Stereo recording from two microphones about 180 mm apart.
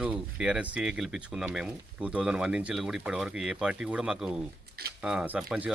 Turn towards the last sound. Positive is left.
turn(degrees=-5)  # may be behind; listen again after turning